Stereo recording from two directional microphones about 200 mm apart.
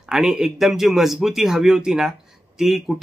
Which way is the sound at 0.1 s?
Centre (ahead or behind).